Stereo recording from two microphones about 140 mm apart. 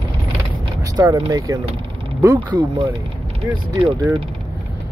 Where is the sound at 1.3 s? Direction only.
25° right (ahead or behind).